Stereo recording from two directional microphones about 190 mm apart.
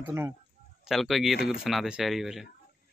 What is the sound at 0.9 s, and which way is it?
Speech, centre (ahead or behind).